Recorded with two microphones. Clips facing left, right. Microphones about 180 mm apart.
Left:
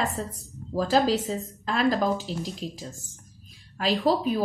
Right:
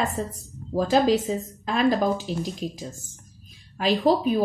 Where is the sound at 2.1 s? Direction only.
Centre (ahead or behind).